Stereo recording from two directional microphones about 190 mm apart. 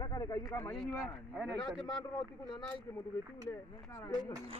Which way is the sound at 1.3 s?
5° left (ahead or behind).